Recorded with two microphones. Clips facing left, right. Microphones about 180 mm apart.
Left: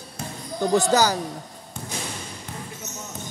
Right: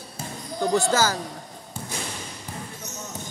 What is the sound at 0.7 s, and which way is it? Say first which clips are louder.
Speech: left 3 dB; 20° left (ahead or behind).